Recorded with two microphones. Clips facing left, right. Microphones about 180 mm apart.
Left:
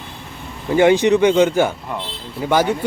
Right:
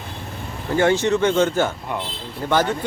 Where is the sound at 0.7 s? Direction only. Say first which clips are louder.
Left 5 dB; 15° left (ahead or behind).